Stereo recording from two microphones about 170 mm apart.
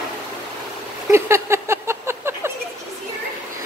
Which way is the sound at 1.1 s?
15° right (ahead or behind).